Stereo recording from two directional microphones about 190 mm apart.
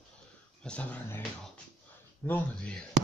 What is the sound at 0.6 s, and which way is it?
Speech, 5° left (ahead or behind).